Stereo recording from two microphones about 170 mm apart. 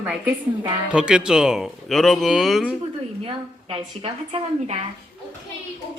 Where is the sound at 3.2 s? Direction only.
35° right (ahead or behind).